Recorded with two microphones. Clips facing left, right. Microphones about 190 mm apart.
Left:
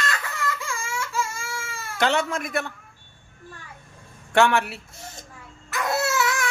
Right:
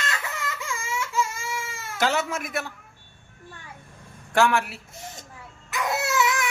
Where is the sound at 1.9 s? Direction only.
5° right (ahead or behind).